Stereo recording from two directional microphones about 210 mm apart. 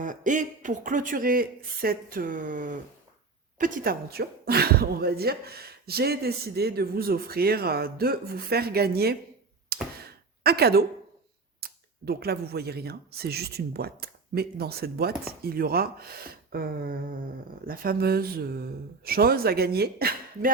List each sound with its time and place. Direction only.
0.0 s speech: 35° right (ahead or behind)
10.0 s a sound: 50° right (ahead or behind)
11.6 s speech: 50° right (ahead or behind)